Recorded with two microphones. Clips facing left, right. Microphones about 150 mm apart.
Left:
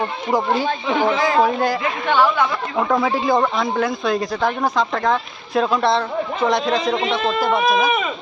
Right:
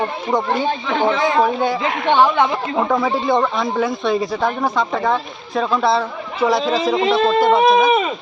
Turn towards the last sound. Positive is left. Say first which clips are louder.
# right 5 dB
turn(degrees=-25)  # may be behind; listen again after turning